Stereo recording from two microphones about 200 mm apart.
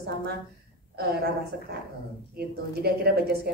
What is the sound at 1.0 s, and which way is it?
Speech, 50° right (ahead or behind).